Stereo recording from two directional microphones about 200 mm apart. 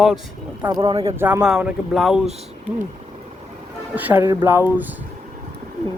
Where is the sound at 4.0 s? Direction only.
10° right (ahead or behind).